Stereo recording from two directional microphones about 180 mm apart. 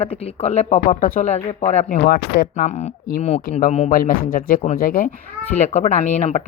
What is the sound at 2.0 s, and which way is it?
Speech, 65° left (ahead or behind).